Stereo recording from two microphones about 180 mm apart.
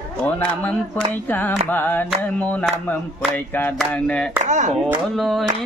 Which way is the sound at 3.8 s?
5° left (ahead or behind).